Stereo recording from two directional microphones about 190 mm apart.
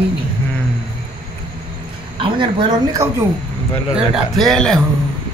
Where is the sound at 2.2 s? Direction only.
25° right (ahead or behind).